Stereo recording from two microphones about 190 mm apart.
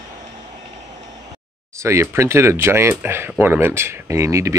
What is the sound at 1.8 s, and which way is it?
Speech, 15° right (ahead or behind).